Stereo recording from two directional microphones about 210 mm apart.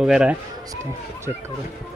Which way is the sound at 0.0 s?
5° right (ahead or behind).